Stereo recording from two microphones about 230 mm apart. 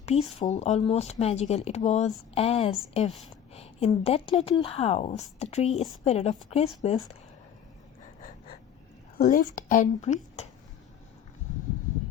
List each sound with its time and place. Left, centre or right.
0.0 s a woman's voice: left
9.1 s a woman's voice: left